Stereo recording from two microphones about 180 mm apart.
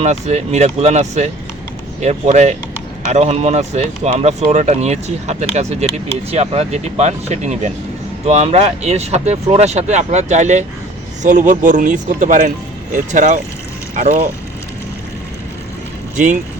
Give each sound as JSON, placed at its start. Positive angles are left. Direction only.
{"t": 0.0, "sound": "speech", "side_deg": -40}
{"t": 16.1, "sound": "speech", "side_deg": -45}